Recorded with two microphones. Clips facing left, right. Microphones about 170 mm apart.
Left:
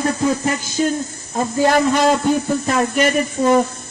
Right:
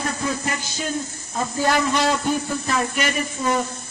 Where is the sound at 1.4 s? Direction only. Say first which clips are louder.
Left 6 dB; 50° left (ahead or behind).